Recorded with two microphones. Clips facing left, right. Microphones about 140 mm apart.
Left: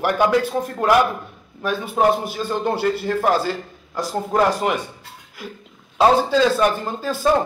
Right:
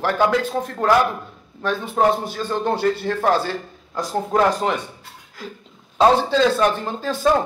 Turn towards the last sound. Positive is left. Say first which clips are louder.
# right 1 dB
turn(degrees=5)  # may be behind; listen again after turning